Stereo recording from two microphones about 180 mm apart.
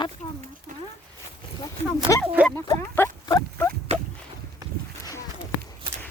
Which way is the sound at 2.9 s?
15° left (ahead or behind).